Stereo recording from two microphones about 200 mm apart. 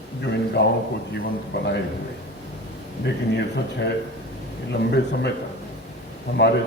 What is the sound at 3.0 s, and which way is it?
A man's voice, 60° left (ahead or behind).